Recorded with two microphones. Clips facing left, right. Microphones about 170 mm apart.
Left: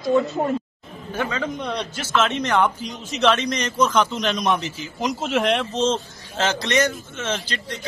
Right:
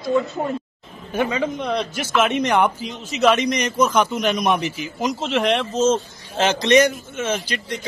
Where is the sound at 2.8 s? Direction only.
Centre (ahead or behind).